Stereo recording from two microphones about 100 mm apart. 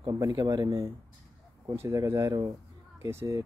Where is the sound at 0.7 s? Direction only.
30° right (ahead or behind).